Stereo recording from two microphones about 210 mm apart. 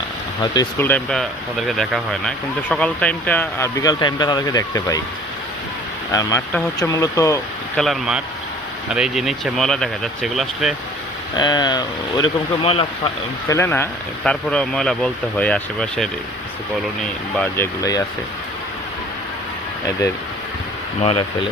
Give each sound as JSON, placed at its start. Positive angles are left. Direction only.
{"t": 0.4, "sound": "speech", "side_deg": 20}
{"t": 0.9, "sound": "speech", "side_deg": 5}
{"t": 6.1, "sound": "speech", "side_deg": 15}
{"t": 7.8, "sound": "speech", "side_deg": 0}
{"t": 11.3, "sound": "speech", "side_deg": 20}
{"t": 13.5, "sound": "speech", "side_deg": 10}
{"t": 17.3, "sound": "speech", "side_deg": 10}
{"t": 21.0, "sound": "speech", "side_deg": 25}